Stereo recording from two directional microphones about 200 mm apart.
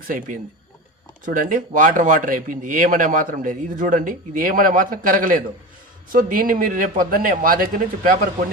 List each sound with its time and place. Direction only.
1.2 s speech: 45° right (ahead or behind)